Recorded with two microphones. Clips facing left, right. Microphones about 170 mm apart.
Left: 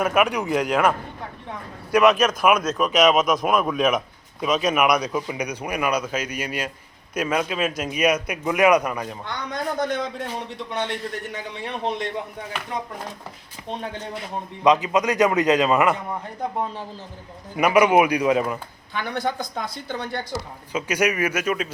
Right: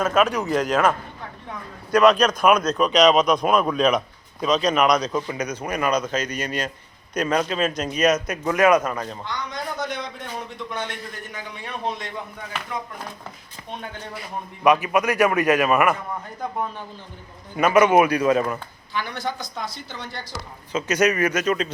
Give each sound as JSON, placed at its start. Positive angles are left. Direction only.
{"t": 0.0, "sound": "speech", "side_deg": 15}
{"t": 9.2, "sound": "speech", "side_deg": 55}
{"t": 11.6, "sound": "a man's voice", "side_deg": 20}
{"t": 14.3, "sound": "a man's voice", "side_deg": 20}
{"t": 17.6, "sound": "speech", "side_deg": 15}
{"t": 18.9, "sound": "speech", "side_deg": 55}
{"t": 20.3, "sound": "speech", "side_deg": 10}